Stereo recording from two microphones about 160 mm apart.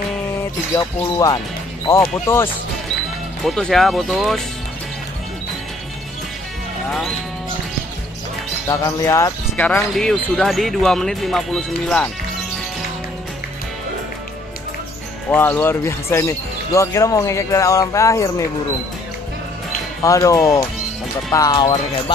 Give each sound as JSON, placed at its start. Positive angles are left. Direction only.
{"t": 0.7, "sound": "speech", "side_deg": 20}
{"t": 3.4, "sound": "speech", "side_deg": 0}
{"t": 6.9, "sound": "speech", "side_deg": 0}
{"t": 8.6, "sound": "speech", "side_deg": 20}
{"t": 9.7, "sound": "speech", "side_deg": 5}
{"t": 15.2, "sound": "speech", "side_deg": 10}
{"t": 20.0, "sound": "speech", "side_deg": 20}